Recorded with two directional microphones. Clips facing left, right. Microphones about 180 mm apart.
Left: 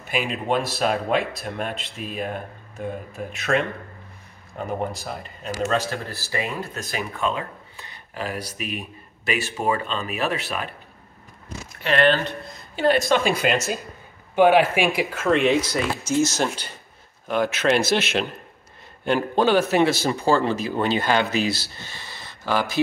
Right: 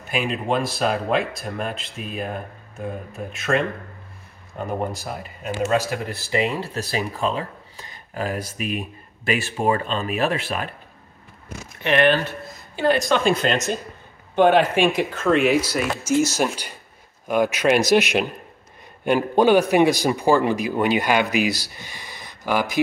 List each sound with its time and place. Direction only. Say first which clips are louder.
0.1 s speech: right 1 dB; centre (ahead or behind); by 10.7 s 40° right (ahead or behind)
11.8 s a man's voice: right 1 dB; 20° right (ahead or behind)
12.3 s a man's voice: left 1 dB; centre (ahead or behind)